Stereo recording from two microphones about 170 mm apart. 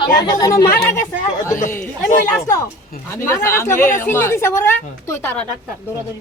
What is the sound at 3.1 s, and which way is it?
A woman's voice, 15° left (ahead or behind).